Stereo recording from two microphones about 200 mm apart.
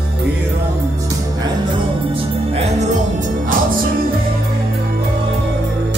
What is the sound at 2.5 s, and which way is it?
Music, 35° right (ahead or behind).